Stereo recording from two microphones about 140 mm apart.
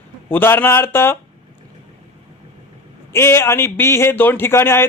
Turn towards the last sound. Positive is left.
turn(degrees=15)  # may be behind; listen again after turning